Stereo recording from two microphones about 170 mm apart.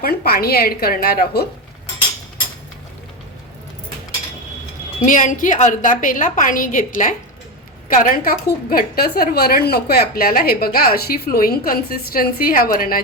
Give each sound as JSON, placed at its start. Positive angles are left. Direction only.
{"t": 0.0, "sound": "a woman's voice", "side_deg": 65}
{"t": 5.0, "sound": "a woman's voice", "side_deg": 50}